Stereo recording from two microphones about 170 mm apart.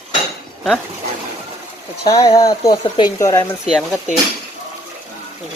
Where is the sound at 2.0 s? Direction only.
20° left (ahead or behind).